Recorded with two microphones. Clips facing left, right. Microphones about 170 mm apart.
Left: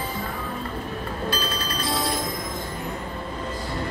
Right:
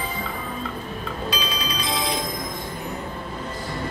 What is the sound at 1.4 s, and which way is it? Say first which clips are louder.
Music: even; 75° right (ahead or behind).